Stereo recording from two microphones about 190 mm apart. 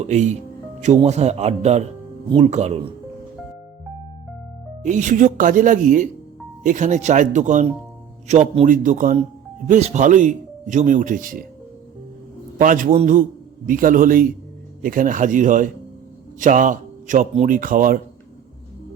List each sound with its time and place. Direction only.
0.0 s speech: 35° right (ahead or behind)
4.8 s a man's voice: 40° right (ahead or behind)
12.5 s a man's voice: 45° right (ahead or behind)